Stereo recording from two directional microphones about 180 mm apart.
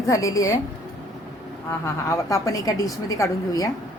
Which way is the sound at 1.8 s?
15° left (ahead or behind).